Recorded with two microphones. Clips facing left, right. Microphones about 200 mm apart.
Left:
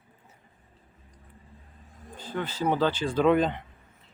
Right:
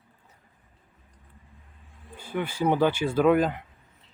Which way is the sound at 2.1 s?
10° right (ahead or behind).